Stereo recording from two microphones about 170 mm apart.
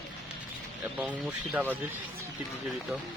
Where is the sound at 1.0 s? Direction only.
10° right (ahead or behind).